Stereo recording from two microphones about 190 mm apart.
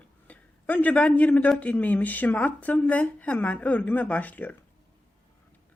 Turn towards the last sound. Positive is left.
turn(degrees=10)  # may be behind; listen again after turning